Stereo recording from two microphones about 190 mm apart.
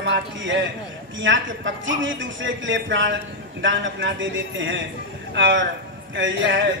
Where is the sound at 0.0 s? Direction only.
75° right (ahead or behind).